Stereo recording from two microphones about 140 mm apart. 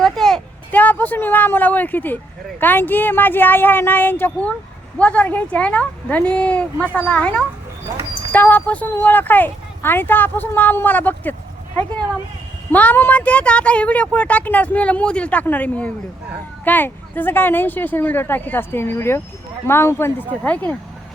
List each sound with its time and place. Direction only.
0.0 s a sound: 5° left (ahead or behind)
2.6 s speech: 15° left (ahead or behind)
12.7 s speech: 10° left (ahead or behind)